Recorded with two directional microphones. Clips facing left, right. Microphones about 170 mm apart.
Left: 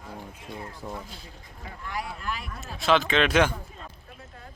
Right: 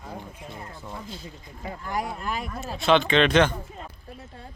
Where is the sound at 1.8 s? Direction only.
45° right (ahead or behind).